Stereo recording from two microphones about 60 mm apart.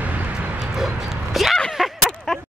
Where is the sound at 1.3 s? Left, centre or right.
Centre.